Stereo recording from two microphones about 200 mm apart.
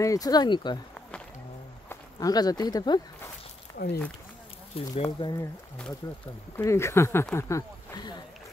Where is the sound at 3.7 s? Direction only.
15° left (ahead or behind).